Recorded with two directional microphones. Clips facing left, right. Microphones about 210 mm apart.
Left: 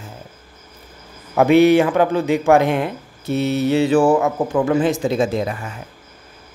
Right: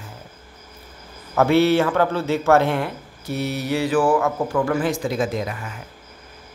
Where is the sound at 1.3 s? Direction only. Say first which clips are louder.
Left 4 dB; 15° left (ahead or behind).